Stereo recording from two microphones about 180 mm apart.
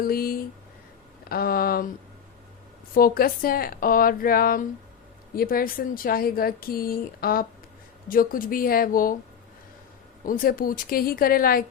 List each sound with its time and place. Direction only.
0.0 s speech: 55° left (ahead or behind)
2.9 s a woman's voice: 55° left (ahead or behind)
10.2 s a woman's voice: 50° left (ahead or behind)